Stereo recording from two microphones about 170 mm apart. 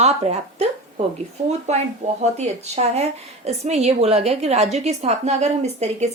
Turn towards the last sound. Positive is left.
turn(degrees=-40)  # may be behind; listen again after turning